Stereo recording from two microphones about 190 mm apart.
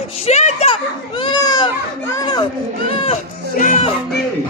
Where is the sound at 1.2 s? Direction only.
20° left (ahead or behind).